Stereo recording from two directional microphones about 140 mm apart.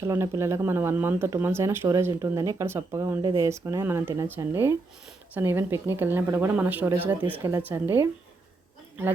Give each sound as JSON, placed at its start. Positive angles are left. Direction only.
{"t": 0.0, "sound": "a woman's voice", "side_deg": -20}